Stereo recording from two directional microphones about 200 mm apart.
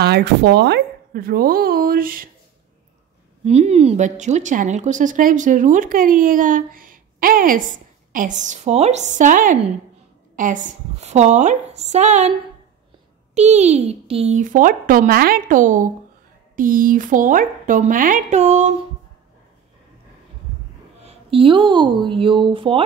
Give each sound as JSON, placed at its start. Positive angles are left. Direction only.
{"t": 0.0, "sound": "speech", "side_deg": -55}
{"t": 3.4, "sound": "speech", "side_deg": -30}
{"t": 21.0, "sound": "speech", "side_deg": -30}